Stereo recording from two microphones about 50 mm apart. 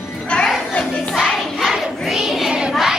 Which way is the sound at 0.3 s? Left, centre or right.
Left.